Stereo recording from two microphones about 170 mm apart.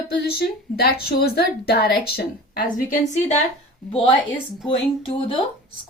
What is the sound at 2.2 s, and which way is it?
Speech, 60° left (ahead or behind).